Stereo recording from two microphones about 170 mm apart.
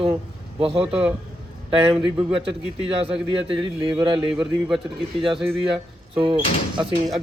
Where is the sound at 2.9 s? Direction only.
35° right (ahead or behind).